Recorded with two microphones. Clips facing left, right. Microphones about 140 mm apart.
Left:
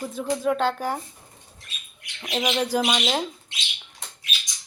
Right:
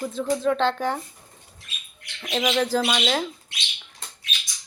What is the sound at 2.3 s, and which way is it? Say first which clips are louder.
A woman's voice: right 2 dB; 5° left (ahead or behind).